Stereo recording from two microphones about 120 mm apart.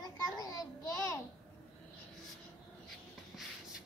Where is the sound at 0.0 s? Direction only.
30° left (ahead or behind).